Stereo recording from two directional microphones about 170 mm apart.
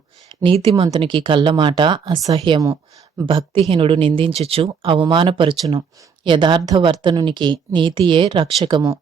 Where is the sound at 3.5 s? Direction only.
30° right (ahead or behind).